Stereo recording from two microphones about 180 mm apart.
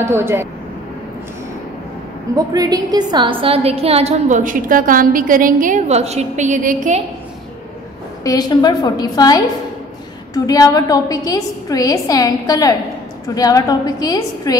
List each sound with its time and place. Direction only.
0.0 s speech: 15° right (ahead or behind)
2.3 s a woman's voice: 20° right (ahead or behind); by 7.0 s 45° right (ahead or behind)
8.2 s a woman's voice: 20° left (ahead or behind)